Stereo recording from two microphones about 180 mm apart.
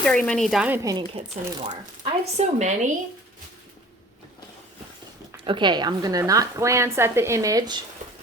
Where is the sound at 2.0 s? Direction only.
35° right (ahead or behind).